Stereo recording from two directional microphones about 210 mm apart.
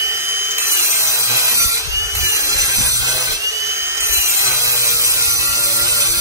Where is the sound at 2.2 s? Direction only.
15° right (ahead or behind).